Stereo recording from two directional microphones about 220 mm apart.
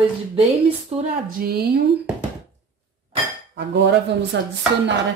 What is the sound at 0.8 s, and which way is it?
Speech, 40° right (ahead or behind).